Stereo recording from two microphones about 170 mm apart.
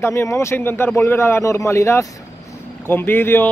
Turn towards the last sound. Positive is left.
turn(degrees=10)  # may be behind; listen again after turning